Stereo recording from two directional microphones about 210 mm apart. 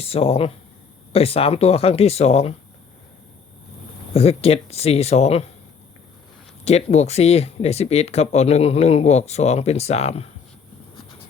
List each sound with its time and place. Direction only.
0.0 s speech: 30° left (ahead or behind)
4.1 s speech: 30° left (ahead or behind)
6.7 s speech: 30° left (ahead or behind)